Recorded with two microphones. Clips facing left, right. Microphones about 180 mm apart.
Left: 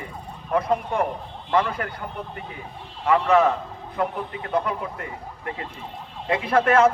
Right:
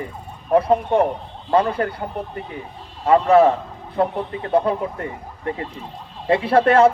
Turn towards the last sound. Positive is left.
turn(degrees=-35)  # may be behind; listen again after turning